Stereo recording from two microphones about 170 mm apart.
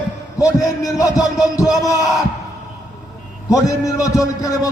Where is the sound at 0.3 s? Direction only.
20° left (ahead or behind).